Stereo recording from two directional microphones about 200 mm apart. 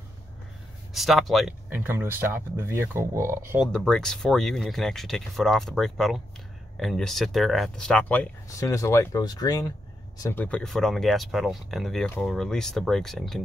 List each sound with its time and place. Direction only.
0.9 s speech: centre (ahead or behind)
3.6 s speech: 5° left (ahead or behind)
10.4 s speech: 5° left (ahead or behind)